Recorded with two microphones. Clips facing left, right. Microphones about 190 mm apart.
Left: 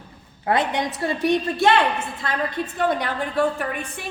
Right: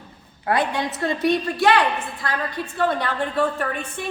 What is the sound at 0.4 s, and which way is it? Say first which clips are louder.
Speech: even; 20° left (ahead or behind).